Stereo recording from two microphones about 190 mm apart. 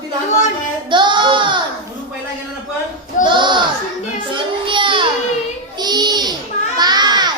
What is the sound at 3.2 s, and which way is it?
Speech, 25° right (ahead or behind).